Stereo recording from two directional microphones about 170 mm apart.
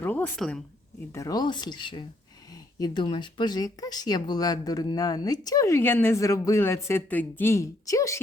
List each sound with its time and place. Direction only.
0.0 s a woman's voice: 10° left (ahead or behind)
1.1 s speech: 20° left (ahead or behind)